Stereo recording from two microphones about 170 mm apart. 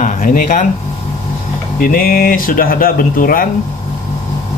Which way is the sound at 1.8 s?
55° left (ahead or behind).